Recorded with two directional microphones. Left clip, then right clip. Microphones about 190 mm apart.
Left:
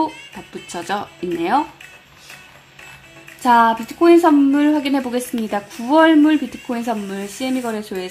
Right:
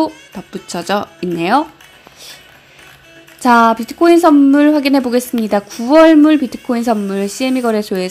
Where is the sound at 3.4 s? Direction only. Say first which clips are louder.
Right 3 dB; 30° right (ahead or behind).